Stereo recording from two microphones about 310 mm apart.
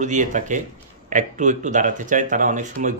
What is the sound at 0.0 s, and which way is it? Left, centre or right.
Speech, right.